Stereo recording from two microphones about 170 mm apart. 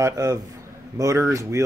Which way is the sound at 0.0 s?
20° right (ahead or behind).